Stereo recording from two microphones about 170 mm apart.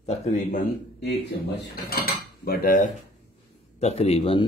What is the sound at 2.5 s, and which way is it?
Dishes, 50° left (ahead or behind).